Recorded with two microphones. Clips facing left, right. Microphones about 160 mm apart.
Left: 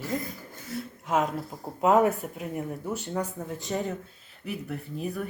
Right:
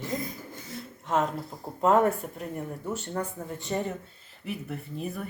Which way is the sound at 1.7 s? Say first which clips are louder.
Left 1 dB; 5° left (ahead or behind).